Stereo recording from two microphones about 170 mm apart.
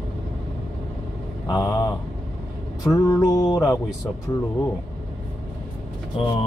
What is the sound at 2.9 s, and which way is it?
Music, 20° left (ahead or behind).